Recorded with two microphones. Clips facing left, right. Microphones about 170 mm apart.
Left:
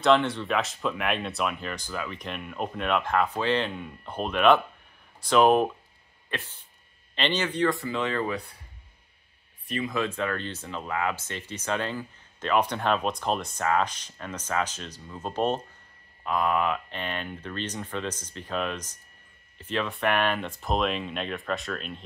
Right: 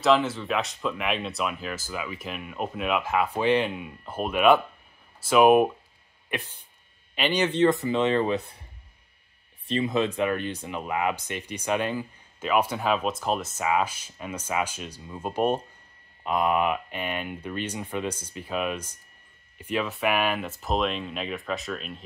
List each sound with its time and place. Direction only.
0.0 s speech: centre (ahead or behind)
7.4 s speech: 20° right (ahead or behind)
9.7 s speech: 25° right (ahead or behind); by 22.0 s centre (ahead or behind)